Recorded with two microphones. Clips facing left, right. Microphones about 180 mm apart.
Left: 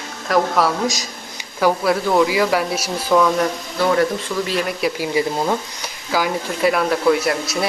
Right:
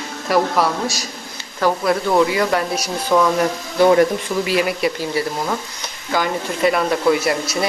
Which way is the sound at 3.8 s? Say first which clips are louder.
Right 4 dB; 20° right (ahead or behind).